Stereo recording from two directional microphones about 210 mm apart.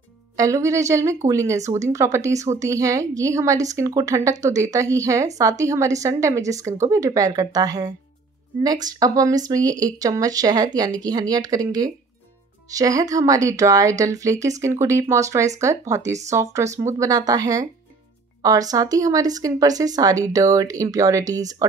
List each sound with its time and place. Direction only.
0.4 s a woman's voice: 15° right (ahead or behind)
12.7 s a woman's voice: 15° right (ahead or behind)